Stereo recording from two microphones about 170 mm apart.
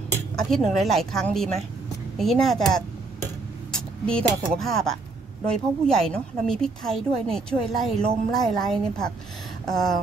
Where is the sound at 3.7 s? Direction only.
5° left (ahead or behind).